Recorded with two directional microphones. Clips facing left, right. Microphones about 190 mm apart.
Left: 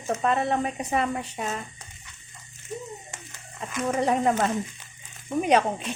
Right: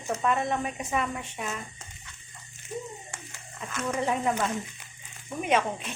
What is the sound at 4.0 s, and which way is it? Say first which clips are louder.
Speech: left 5 dB; 40° left (ahead or behind).